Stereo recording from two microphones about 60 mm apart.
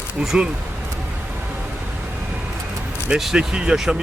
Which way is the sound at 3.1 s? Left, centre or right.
Centre.